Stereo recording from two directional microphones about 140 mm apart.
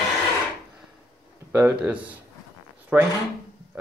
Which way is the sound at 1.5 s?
10° right (ahead or behind).